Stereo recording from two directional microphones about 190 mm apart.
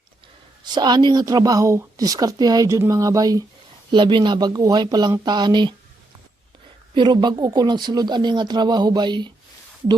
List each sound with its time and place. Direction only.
0.6 s speech: 20° right (ahead or behind)
6.9 s speech: 25° right (ahead or behind)